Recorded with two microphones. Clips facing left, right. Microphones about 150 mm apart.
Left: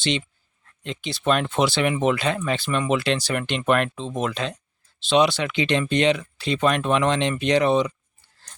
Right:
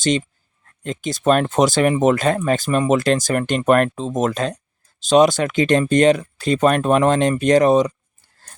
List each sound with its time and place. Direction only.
0.0 s speech: 45° right (ahead or behind)